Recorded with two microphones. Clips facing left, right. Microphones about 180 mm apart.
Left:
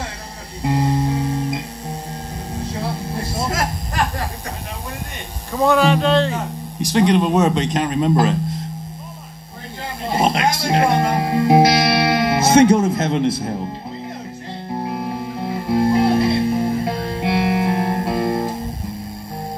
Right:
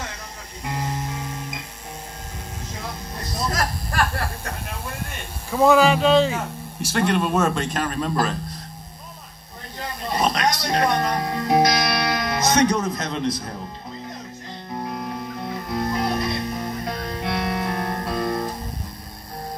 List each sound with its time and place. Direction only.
0.6 s guitar: 35° left (ahead or behind)
2.5 s music: 35° left (ahead or behind); by 4.6 s 15° left (ahead or behind)
5.5 s speech: 5° right (ahead or behind)
6.4 s speech: 15° left (ahead or behind)
10.0 s music: 25° left (ahead or behind)
14.7 s music: 25° left (ahead or behind)